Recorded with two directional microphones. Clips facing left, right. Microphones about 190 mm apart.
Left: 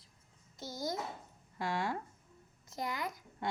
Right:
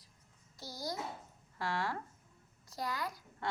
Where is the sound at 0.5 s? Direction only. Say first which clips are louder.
Left 3 dB; 20° left (ahead or behind).